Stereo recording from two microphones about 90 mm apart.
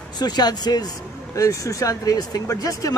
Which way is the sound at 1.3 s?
35° left (ahead or behind).